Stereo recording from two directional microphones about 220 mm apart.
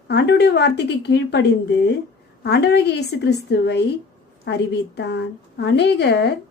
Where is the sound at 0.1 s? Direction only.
50° left (ahead or behind).